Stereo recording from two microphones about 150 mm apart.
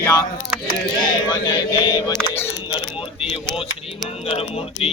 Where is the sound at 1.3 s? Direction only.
30° left (ahead or behind).